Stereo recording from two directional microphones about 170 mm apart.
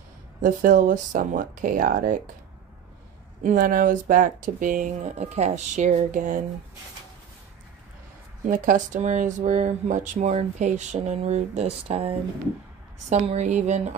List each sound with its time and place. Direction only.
0.4 s speech: 50° right (ahead or behind)
3.4 s speech: 55° right (ahead or behind)
5.1 s speech: 40° right (ahead or behind)
8.5 s speech: 50° right (ahead or behind)